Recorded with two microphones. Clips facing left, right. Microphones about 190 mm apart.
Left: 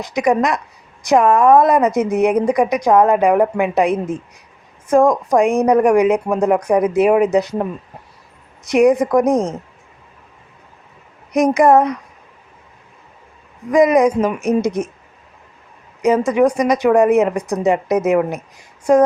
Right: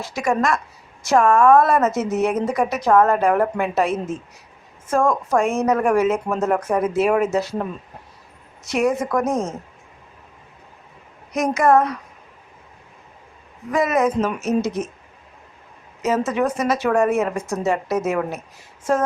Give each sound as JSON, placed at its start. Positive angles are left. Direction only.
{"t": 0.0, "sound": "a woman's voice", "side_deg": 15}
{"t": 11.3, "sound": "a woman's voice", "side_deg": 15}
{"t": 13.7, "sound": "a woman's voice", "side_deg": 15}
{"t": 16.0, "sound": "a woman's voice", "side_deg": 15}